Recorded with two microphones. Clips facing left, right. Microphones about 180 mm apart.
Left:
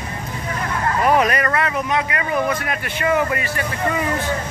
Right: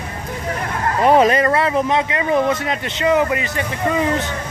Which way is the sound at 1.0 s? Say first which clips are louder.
Right 5 dB; 30° right (ahead or behind).